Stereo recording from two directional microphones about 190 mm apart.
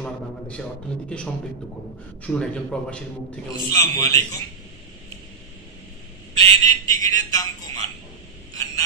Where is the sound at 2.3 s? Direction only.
10° left (ahead or behind).